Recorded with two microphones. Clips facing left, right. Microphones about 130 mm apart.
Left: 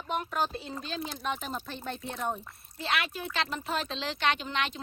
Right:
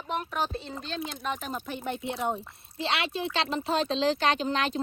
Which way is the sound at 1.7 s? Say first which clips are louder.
Right 5 dB; 15° right (ahead or behind).